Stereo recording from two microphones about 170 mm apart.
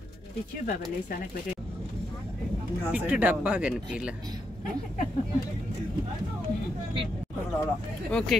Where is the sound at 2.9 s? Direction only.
5° right (ahead or behind).